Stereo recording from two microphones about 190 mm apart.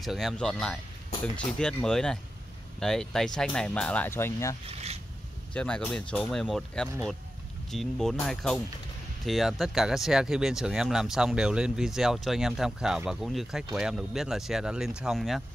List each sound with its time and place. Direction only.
0.0 s speech: centre (ahead or behind)
4.6 s zipper: 35° right (ahead or behind)
5.5 s speech: 5° left (ahead or behind)